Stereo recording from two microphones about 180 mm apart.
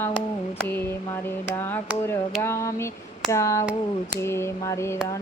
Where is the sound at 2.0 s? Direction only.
15° left (ahead or behind).